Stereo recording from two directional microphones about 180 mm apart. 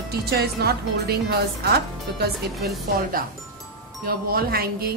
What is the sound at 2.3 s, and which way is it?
Speech, centre (ahead or behind).